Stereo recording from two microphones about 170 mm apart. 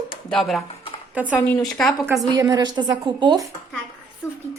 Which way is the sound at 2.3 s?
20° right (ahead or behind).